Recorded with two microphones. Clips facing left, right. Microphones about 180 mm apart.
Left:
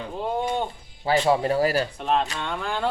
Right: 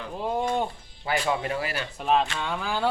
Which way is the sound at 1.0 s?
30° left (ahead or behind).